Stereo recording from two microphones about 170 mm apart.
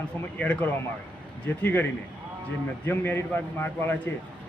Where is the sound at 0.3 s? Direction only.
10° left (ahead or behind).